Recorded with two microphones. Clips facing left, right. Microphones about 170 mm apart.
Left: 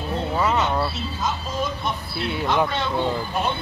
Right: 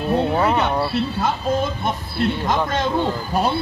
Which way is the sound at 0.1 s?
60° right (ahead or behind).